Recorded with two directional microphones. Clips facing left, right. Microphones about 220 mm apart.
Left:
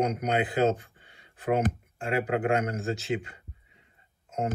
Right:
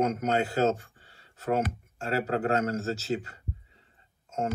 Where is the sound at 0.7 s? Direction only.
40° right (ahead or behind).